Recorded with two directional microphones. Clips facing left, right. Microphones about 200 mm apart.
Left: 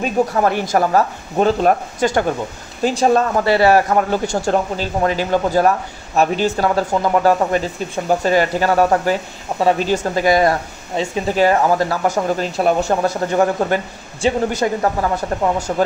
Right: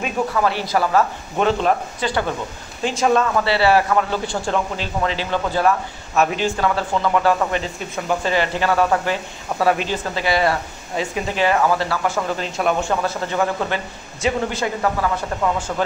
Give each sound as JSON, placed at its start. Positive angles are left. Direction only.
{"t": 0.0, "sound": "speech", "side_deg": 45}
{"t": 2.8, "sound": "a man's voice", "side_deg": 35}